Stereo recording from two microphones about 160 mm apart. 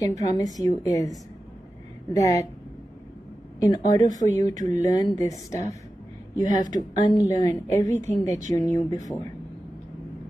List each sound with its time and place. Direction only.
0.0 s speech: 20° left (ahead or behind)
2.1 s speech: 20° left (ahead or behind)
3.6 s speech: 25° left (ahead or behind)